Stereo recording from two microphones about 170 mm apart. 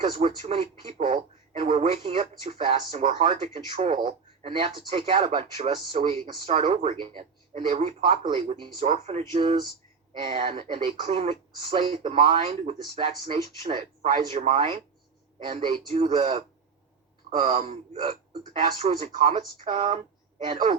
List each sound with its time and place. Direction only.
0.0 s speech: 35° right (ahead or behind)